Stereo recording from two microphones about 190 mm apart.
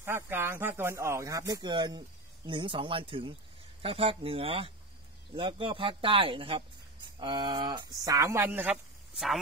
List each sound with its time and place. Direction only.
0.0 s speech: 10° right (ahead or behind)